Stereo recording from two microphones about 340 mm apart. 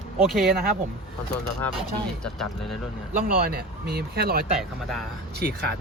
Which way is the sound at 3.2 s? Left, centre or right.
Right.